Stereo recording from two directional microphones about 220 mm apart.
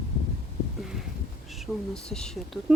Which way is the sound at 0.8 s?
Centre (ahead or behind).